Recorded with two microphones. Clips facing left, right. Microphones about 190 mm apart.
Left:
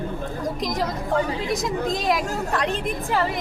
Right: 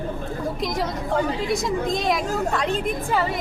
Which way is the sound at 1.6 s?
Centre (ahead or behind).